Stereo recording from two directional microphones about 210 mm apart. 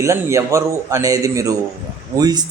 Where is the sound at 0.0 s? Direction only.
15° right (ahead or behind).